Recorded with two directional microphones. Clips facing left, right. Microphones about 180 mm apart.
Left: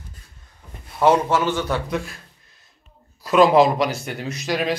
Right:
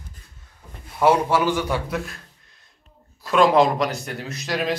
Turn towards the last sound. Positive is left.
turn(degrees=0)  # may be behind; listen again after turning